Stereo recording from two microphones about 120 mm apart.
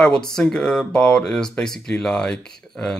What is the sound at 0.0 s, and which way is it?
Speech, 5° left (ahead or behind).